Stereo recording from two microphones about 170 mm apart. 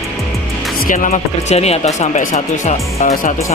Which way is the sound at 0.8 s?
50° left (ahead or behind).